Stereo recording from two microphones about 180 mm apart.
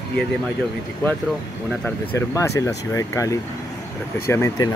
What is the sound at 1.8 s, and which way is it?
Speech, 15° left (ahead or behind).